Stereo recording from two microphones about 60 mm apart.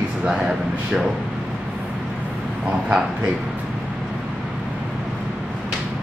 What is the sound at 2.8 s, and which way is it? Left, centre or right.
Speech, centre.